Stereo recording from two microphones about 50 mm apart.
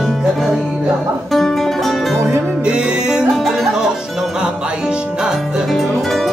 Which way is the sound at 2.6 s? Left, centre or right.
Centre.